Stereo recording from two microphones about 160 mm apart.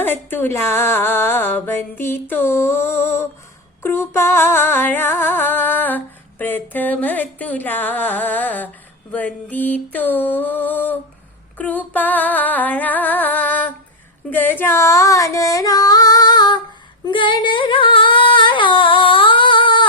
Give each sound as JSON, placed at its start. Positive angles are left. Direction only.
{"t": 0.0, "sound": "a sound", "side_deg": 15}
{"t": 14.3, "sound": "female singing", "side_deg": 10}
{"t": 17.1, "sound": "singing", "side_deg": 30}